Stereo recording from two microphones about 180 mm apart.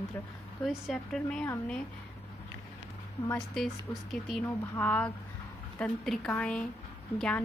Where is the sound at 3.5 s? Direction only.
Centre (ahead or behind).